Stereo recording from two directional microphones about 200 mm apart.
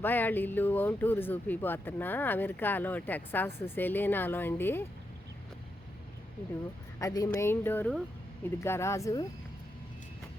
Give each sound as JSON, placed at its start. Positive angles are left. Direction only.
{"t": 0.0, "sound": "speech", "side_deg": 10}
{"t": 7.0, "sound": "speech", "side_deg": 15}